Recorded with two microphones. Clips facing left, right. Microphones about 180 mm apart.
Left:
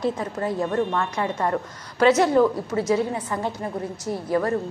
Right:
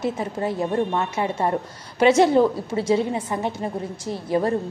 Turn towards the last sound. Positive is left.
turn(degrees=-25)  # may be behind; listen again after turning